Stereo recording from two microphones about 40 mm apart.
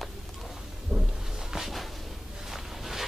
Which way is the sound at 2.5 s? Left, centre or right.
Centre.